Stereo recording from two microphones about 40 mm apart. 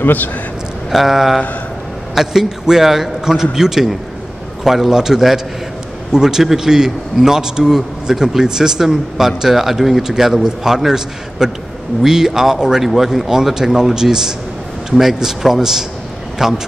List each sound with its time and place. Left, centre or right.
0.0 s a man's voice: left
0.9 s a man's voice: centre